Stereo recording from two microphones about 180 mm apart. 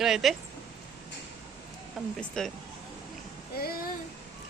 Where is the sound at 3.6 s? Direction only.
60° left (ahead or behind).